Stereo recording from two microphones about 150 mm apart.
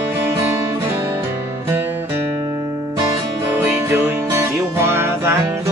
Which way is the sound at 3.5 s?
15° right (ahead or behind).